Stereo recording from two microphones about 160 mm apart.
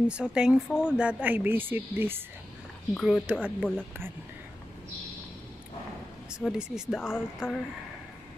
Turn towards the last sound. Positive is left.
turn(degrees=15)  # may be behind; listen again after turning